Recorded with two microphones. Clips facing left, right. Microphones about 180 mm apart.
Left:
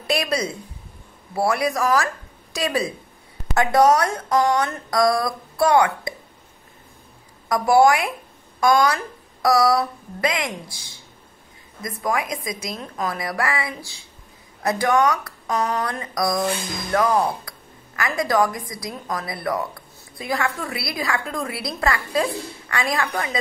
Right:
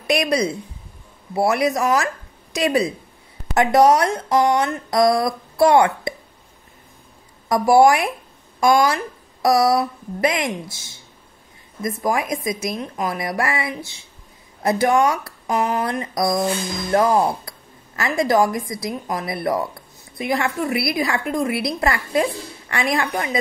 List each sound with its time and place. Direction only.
0.0 s speech: 20° right (ahead or behind)
7.4 s speech: 25° right (ahead or behind)